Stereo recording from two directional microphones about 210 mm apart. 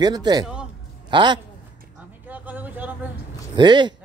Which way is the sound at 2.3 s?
10° right (ahead or behind).